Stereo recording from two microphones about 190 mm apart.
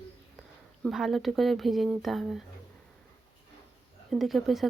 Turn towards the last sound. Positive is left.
turn(degrees=0)  # may be behind; listen again after turning